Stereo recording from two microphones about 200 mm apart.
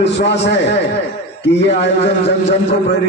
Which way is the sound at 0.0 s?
60° left (ahead or behind).